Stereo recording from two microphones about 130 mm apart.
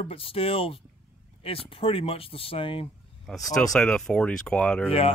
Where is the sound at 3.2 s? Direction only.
Centre (ahead or behind).